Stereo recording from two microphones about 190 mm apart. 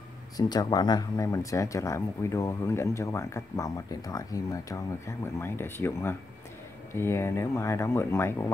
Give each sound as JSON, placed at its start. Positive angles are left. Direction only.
{"t": 0.4, "sound": "speech", "side_deg": 20}